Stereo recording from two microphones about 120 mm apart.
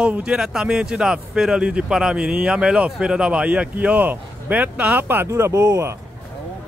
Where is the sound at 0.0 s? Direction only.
10° right (ahead or behind).